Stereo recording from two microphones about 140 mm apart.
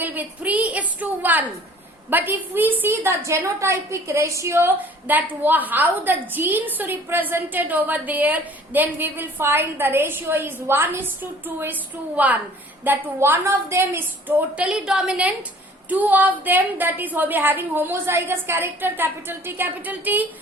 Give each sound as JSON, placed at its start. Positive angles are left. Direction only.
{"t": 0.0, "sound": "a woman's voice", "side_deg": -15}